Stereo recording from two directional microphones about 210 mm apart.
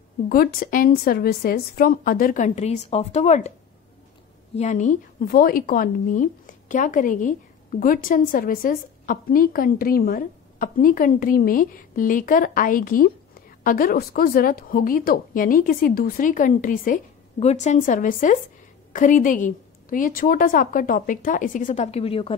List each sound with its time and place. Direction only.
0.3 s speech: 45° left (ahead or behind)
4.6 s speech: 35° left (ahead or behind)